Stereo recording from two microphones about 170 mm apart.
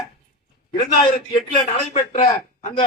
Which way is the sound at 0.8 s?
35° left (ahead or behind).